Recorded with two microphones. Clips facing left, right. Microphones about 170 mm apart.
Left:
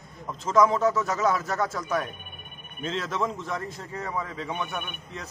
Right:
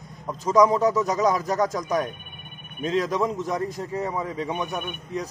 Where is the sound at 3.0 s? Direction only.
35° right (ahead or behind).